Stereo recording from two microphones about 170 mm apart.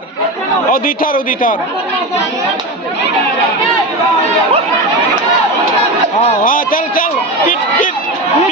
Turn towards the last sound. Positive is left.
turn(degrees=55)  # may be behind; listen again after turning